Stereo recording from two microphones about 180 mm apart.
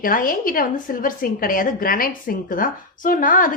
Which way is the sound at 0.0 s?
50° left (ahead or behind).